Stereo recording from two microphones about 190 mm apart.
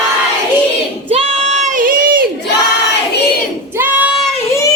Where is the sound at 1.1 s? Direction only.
35° right (ahead or behind).